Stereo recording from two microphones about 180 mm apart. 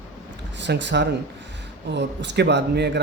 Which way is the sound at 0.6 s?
75° right (ahead or behind).